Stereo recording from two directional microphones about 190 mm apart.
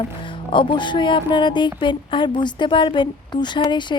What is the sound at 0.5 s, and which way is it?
Speech, 25° left (ahead or behind).